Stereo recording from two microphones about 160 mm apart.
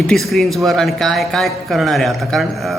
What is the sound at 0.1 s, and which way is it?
A man's voice, centre (ahead or behind).